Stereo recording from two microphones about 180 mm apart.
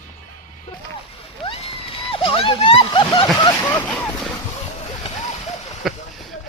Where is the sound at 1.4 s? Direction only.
35° left (ahead or behind).